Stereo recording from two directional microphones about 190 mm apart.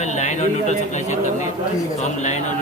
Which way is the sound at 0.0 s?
40° left (ahead or behind).